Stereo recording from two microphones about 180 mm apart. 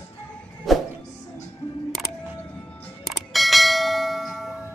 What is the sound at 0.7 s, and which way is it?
Music, centre (ahead or behind).